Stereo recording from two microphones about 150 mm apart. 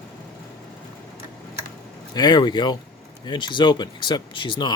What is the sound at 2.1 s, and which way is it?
Speech, 30° left (ahead or behind).